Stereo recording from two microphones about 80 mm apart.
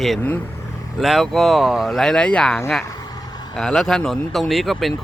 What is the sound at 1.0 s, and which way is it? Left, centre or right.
Speech, centre.